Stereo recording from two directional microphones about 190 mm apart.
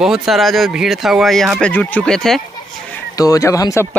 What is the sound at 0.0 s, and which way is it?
Speech, centre (ahead or behind).